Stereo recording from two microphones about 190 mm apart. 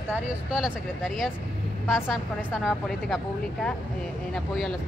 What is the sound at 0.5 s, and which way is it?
Speech, centre (ahead or behind).